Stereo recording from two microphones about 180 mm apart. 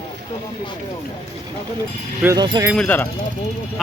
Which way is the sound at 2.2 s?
20° right (ahead or behind).